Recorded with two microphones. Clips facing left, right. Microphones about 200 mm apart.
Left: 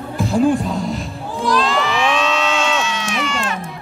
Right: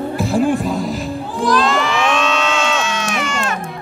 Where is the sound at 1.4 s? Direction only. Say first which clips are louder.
Right 2 dB; 50° right (ahead or behind).